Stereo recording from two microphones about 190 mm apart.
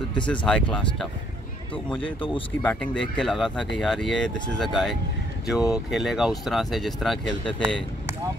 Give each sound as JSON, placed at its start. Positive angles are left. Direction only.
{"t": 0.5, "sound": "speech", "side_deg": 5}
{"t": 1.9, "sound": "speech", "side_deg": 25}
{"t": 2.6, "sound": "speech", "side_deg": 5}